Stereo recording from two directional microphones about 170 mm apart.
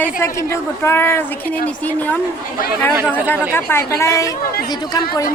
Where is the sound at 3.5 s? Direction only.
15° left (ahead or behind).